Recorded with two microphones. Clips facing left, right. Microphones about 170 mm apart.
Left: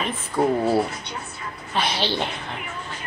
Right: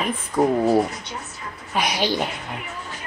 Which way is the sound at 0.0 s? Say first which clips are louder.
Right 2 dB; 15° right (ahead or behind).